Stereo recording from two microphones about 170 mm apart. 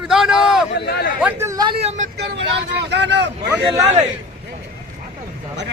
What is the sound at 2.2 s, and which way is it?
Speech, 90° right.